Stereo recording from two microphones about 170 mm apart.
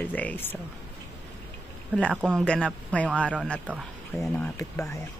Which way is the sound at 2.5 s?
5° left (ahead or behind).